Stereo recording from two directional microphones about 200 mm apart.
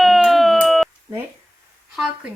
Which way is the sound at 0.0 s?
Centre (ahead or behind).